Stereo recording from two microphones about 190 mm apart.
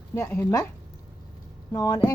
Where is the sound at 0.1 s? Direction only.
15° left (ahead or behind).